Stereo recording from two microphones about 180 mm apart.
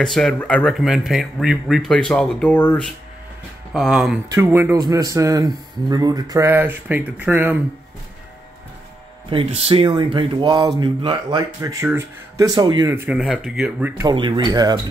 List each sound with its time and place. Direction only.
0.0 s speech: 5° left (ahead or behind)
3.7 s speech: centre (ahead or behind)
4.3 s a man's voice: 15° right (ahead or behind)
9.3 s speech: 30° right (ahead or behind)
12.9 s a man's voice: 10° right (ahead or behind)
13.2 s speech: centre (ahead or behind)
14.0 s speech: 25° right (ahead or behind)